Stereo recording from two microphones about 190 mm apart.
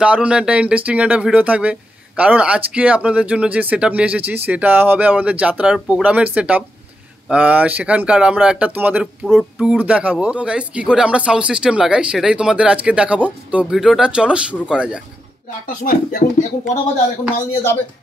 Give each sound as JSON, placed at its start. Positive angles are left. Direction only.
{"t": 0.0, "sound": "speech", "side_deg": -5}
{"t": 15.8, "sound": "speech", "side_deg": 45}